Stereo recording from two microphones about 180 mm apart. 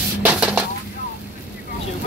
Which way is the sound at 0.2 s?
10° right (ahead or behind).